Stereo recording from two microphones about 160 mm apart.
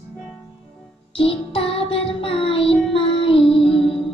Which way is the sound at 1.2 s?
35° left (ahead or behind).